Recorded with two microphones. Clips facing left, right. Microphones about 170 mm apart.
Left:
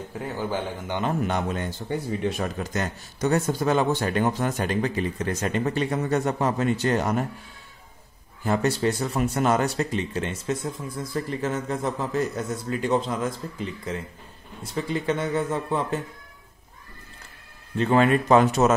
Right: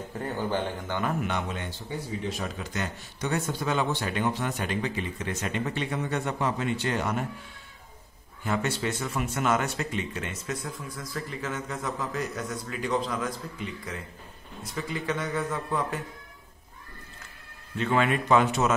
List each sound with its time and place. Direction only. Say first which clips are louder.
0.2 s speech: even; 10° left (ahead or behind)
1.2 s speech: left 5 dB; 40° left (ahead or behind)
1.9 s speech: left 6 dB; 55° left (ahead or behind); by 7.2 s 40° left (ahead or behind)
8.5 s a man's voice: left 6 dB; 35° left (ahead or behind)
17.7 s speech: left 5 dB; 35° left (ahead or behind)